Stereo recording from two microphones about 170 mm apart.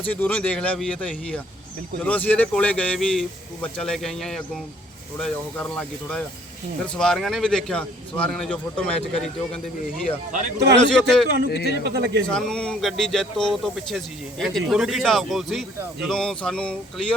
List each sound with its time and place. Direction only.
0.0 s a man's voice: 10° left (ahead or behind)
10.8 s a man's voice: 5° left (ahead or behind)
11.4 s speech: 75° left (ahead or behind)
11.8 s speech: 70° right (ahead or behind)
12.3 s a man's voice: 5° left (ahead or behind)